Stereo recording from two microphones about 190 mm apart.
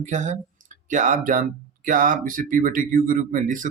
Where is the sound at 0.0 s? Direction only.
40° right (ahead or behind).